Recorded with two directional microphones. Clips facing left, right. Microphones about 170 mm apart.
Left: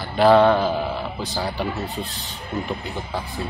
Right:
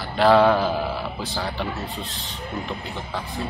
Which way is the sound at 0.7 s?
5° right (ahead or behind).